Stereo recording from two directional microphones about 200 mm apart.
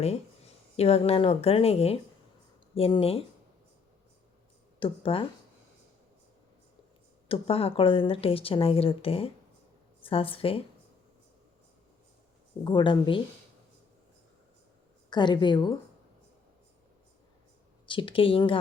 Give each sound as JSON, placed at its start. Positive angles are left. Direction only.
{"t": 0.0, "sound": "a woman's voice", "side_deg": 30}
{"t": 4.8, "sound": "a woman's voice", "side_deg": 25}
{"t": 7.3, "sound": "a woman's voice", "side_deg": 30}
{"t": 12.6, "sound": "a woman's voice", "side_deg": 25}
{"t": 15.1, "sound": "a woman's voice", "side_deg": 20}
{"t": 17.8, "sound": "a woman's voice", "side_deg": 25}